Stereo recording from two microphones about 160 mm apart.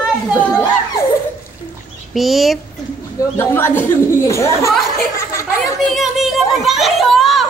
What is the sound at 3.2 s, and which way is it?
Speech, 15° left (ahead or behind).